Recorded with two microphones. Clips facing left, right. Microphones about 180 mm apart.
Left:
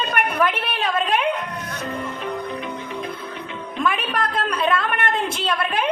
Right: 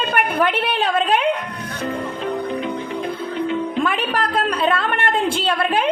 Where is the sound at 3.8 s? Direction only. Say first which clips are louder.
Left 3 dB; 30° right (ahead or behind).